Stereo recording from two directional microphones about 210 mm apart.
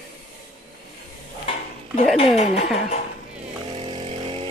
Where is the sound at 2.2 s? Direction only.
30° left (ahead or behind).